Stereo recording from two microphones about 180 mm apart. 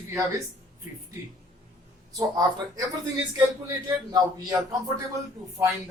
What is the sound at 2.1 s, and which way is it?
Speech, 20° right (ahead or behind).